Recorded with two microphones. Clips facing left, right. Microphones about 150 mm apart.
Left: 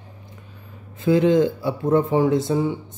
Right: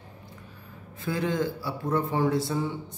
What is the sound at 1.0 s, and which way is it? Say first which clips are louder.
Speech: left 11 dB; 20° left (ahead or behind).